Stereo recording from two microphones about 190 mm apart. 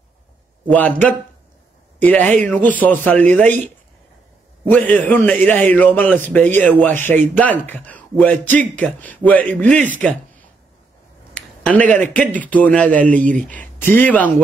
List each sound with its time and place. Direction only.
0.7 s a man's voice: 5° left (ahead or behind)
11.6 s a man's voice: 10° left (ahead or behind)
13.2 s speech: 45° right (ahead or behind)
13.5 s a man's voice: 10° left (ahead or behind)